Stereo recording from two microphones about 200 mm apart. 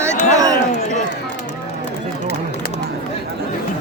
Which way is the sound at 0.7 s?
40° left (ahead or behind).